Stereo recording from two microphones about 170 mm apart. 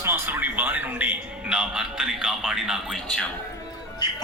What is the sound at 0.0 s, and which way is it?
Music, 15° right (ahead or behind).